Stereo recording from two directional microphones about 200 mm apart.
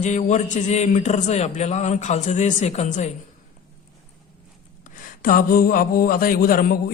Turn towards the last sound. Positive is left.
turn(degrees=45)  # may be behind; listen again after turning